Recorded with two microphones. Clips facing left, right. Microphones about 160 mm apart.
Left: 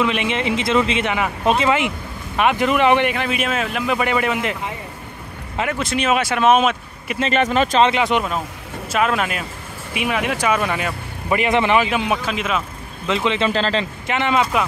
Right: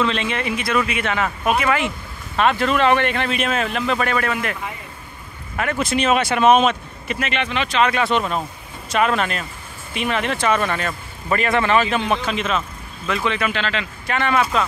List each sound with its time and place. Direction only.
0.0 s speech: 15° left (ahead or behind)
5.8 s speech: centre (ahead or behind)
7.2 s speech: 40° left (ahead or behind)
7.8 s speech: 15° left (ahead or behind)
8.9 s speech: 5° left (ahead or behind)
13.0 s speech: 20° left (ahead or behind)
13.5 s speech: 35° left (ahead or behind)
14.0 s speech: 20° left (ahead or behind)